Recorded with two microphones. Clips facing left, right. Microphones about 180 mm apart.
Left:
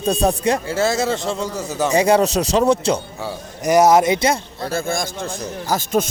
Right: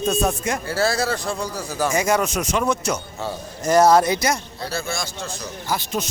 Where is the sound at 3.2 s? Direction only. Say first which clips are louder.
Even; 15° left (ahead or behind).